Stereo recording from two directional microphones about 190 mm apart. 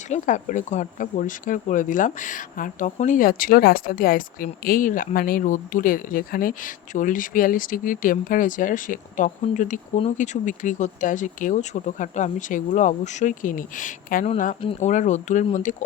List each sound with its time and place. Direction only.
0.1 s speech: 40° left (ahead or behind)